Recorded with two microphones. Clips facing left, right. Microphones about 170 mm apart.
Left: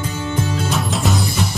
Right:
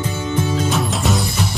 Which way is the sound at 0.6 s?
Centre (ahead or behind).